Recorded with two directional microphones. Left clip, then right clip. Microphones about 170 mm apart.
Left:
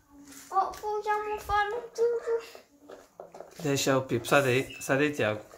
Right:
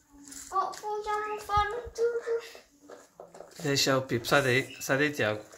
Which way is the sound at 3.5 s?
Centre (ahead or behind).